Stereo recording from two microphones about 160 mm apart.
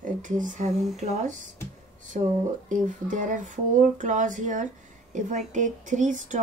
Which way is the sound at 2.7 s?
55° right (ahead or behind).